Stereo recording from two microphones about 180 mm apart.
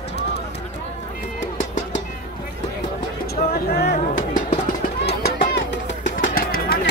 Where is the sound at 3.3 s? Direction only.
55° left (ahead or behind).